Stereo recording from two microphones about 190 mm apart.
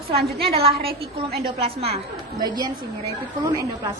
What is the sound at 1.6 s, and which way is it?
Speech, 30° right (ahead or behind).